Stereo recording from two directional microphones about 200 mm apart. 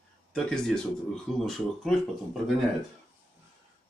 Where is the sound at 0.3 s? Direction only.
5° left (ahead or behind).